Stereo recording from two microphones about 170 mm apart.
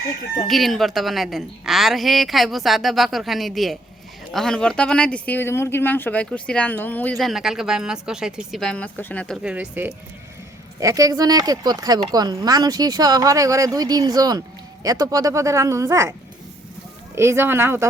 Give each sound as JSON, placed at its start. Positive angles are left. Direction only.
{"t": 0.4, "sound": "speech", "side_deg": 0}
{"t": 17.2, "sound": "speech", "side_deg": -15}